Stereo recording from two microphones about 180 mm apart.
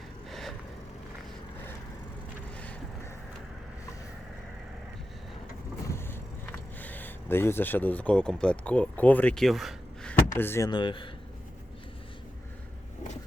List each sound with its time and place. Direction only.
0.3 s gasp: centre (ahead or behind)
5.9 s vehicle: 10° left (ahead or behind)
10.3 s speech: 10° left (ahead or behind)
10.7 s speech: 25° left (ahead or behind)